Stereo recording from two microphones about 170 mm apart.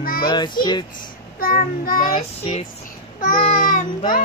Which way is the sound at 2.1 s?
35° left (ahead or behind).